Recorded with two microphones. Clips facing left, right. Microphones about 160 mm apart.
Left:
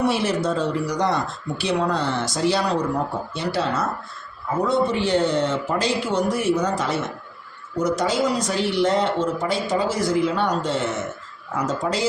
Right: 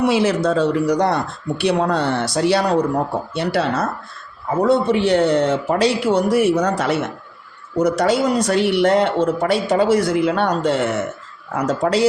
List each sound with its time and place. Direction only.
0.0 s speech: 90° right; by 12.0 s 65° right (ahead or behind)